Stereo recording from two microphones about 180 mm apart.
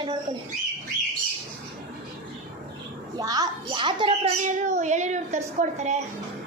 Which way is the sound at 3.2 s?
20° right (ahead or behind).